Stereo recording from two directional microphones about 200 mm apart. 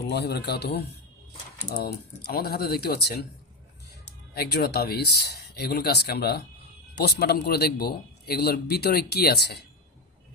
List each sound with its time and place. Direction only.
0.1 s a man's voice: 55° left (ahead or behind)
4.4 s a man's voice: 55° left (ahead or behind)